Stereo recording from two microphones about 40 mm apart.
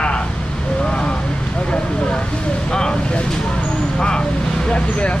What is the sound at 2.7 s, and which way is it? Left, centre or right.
Speech, centre.